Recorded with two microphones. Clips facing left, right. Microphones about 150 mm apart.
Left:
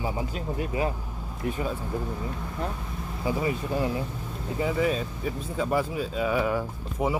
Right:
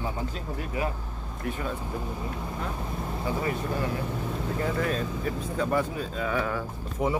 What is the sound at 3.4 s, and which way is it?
Speech, 15° left (ahead or behind).